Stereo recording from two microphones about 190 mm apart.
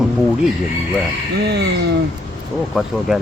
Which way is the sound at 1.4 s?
60° right (ahead or behind).